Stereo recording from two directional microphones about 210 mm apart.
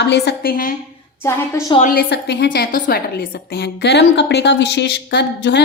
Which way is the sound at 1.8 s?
50° left (ahead or behind).